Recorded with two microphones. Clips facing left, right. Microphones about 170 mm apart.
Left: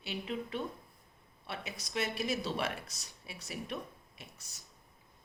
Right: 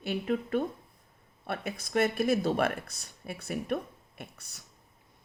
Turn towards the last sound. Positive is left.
turn(degrees=-65)  # may be behind; listen again after turning